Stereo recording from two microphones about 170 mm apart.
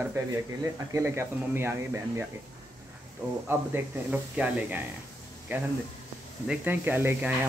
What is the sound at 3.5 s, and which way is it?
Speech, 10° right (ahead or behind).